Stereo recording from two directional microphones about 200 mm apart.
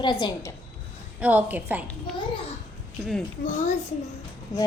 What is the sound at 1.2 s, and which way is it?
Speech, 10° right (ahead or behind).